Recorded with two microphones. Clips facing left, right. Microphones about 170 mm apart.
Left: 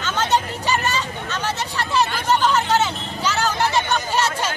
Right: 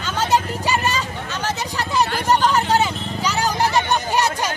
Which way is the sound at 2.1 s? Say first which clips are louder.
Right 1 dB; 40° right (ahead or behind).